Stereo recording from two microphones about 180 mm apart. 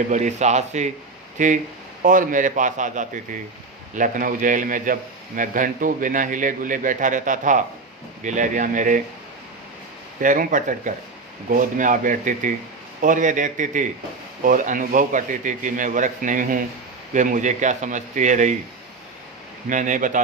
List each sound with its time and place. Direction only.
0.1 s a man's voice: 40° right (ahead or behind)
10.2 s a man's voice: 50° right (ahead or behind)
19.6 s a man's voice: 45° right (ahead or behind)